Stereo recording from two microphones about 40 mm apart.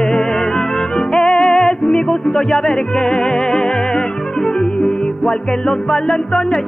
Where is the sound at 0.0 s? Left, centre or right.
Centre.